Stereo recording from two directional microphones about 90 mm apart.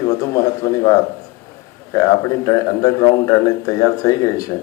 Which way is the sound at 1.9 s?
40° left (ahead or behind).